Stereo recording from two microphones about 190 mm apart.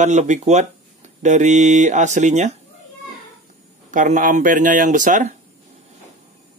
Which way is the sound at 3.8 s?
40° right (ahead or behind).